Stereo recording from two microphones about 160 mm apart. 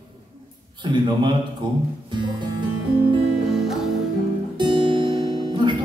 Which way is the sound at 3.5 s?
Centre (ahead or behind).